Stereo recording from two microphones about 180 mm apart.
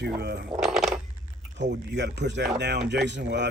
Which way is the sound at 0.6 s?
Centre (ahead or behind).